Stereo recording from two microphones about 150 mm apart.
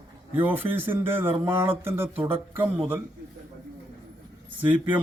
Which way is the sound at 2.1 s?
40° right (ahead or behind).